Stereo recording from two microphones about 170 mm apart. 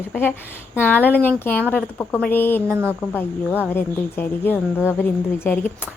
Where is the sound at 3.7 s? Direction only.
10° left (ahead or behind).